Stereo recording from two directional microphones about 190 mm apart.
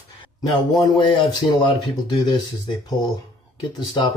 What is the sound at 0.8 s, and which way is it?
Speech, 25° left (ahead or behind).